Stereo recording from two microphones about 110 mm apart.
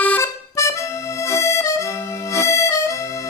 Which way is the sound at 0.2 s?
25° left (ahead or behind).